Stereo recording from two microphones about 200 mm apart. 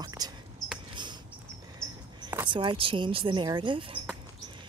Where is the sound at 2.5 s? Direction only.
25° right (ahead or behind).